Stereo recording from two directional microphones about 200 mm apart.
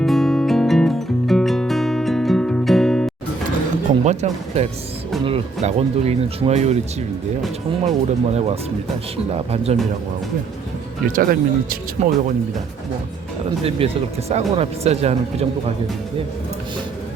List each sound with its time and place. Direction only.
0.0 s music: centre (ahead or behind)
4.0 s speech: 35° right (ahead or behind)
7.9 s speech: 35° right (ahead or behind)
11.1 s speech: 45° right (ahead or behind)
12.0 s speech: 35° right (ahead or behind)
13.7 s speech: 30° right (ahead or behind)